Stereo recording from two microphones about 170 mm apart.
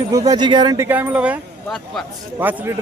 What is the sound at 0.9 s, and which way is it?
Speech, 10° right (ahead or behind).